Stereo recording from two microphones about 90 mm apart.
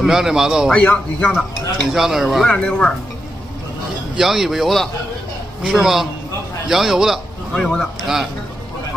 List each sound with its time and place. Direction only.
0.0 s a man's voice: 5° right (ahead or behind)
0.7 s a man's voice: 20° left (ahead or behind)
1.9 s a man's voice: 5° right (ahead or behind)
2.4 s speech: 10° left (ahead or behind)
4.2 s a man's voice: 5° right (ahead or behind)